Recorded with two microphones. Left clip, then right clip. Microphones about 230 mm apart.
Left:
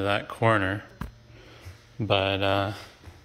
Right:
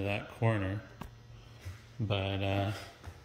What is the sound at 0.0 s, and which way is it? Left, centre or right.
Speech, centre.